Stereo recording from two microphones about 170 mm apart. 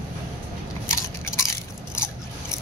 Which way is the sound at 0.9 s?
20° left (ahead or behind).